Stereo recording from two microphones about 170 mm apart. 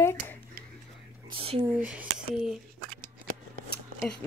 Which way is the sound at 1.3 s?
35° right (ahead or behind).